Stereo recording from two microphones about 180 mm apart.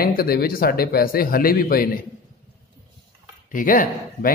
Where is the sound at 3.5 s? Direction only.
50° left (ahead or behind).